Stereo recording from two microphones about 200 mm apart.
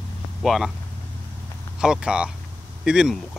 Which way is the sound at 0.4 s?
Centre (ahead or behind).